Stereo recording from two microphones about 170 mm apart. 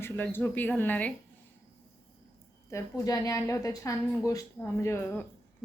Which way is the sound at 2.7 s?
20° left (ahead or behind).